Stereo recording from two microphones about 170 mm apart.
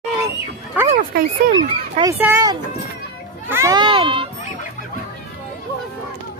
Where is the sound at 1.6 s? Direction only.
25° right (ahead or behind).